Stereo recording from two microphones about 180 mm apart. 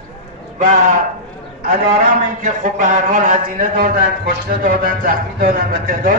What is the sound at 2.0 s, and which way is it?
A man's voice, 45° right (ahead or behind).